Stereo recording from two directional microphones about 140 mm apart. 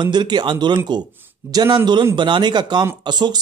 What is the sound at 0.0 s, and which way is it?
Speech, 30° right (ahead or behind).